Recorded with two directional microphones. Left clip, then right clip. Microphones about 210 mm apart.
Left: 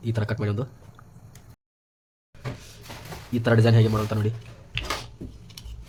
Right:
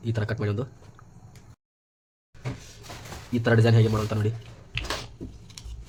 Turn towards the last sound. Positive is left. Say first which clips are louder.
# left 1 dB
turn(degrees=0)  # may be behind; listen again after turning